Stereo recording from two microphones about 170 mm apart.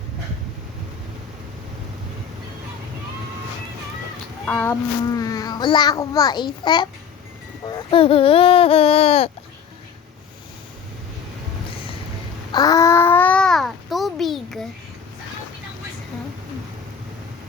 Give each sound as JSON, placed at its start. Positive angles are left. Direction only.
{"t": 4.4, "sound": "speech", "side_deg": 10}
{"t": 5.1, "sound": "a child's voice", "side_deg": 20}
{"t": 12.5, "sound": "babbling", "side_deg": 20}